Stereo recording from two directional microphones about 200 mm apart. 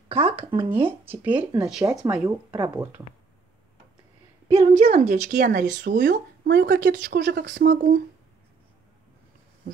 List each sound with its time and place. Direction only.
0.1 s speech: 25° right (ahead or behind)
0.8 s speech: 10° right (ahead or behind)
2.2 s speech: 15° right (ahead or behind)
4.5 s speech: 30° right (ahead or behind); by 7.4 s 55° right (ahead or behind)
7.4 s speech: 45° right (ahead or behind)